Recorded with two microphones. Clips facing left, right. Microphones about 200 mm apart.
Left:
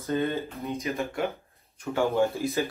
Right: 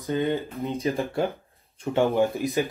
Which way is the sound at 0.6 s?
30° right (ahead or behind).